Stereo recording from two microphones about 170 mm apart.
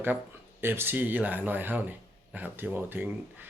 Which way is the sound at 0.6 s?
15° right (ahead or behind).